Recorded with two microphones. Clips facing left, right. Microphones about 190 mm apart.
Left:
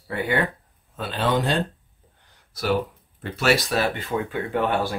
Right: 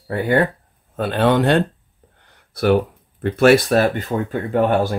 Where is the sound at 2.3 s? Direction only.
55° right (ahead or behind).